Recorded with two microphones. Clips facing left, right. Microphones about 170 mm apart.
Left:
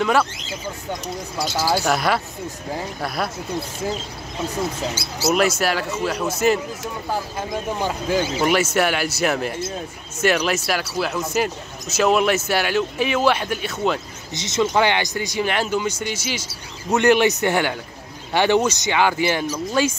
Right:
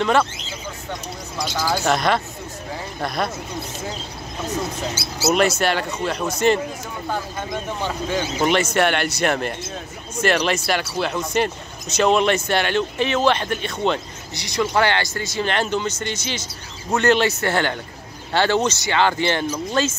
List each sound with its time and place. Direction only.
1.4 s a man's voice: 10° left (ahead or behind)
5.3 s a man's voice: 5° left (ahead or behind)
14.3 s speech: 20° left (ahead or behind)